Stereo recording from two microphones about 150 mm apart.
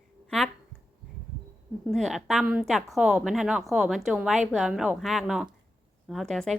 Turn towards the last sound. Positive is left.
turn(degrees=0)  # may be behind; listen again after turning